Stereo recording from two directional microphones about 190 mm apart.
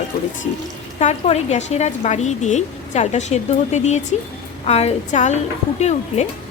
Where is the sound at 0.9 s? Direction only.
35° left (ahead or behind).